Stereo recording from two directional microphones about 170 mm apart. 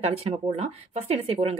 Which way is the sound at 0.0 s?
40° right (ahead or behind).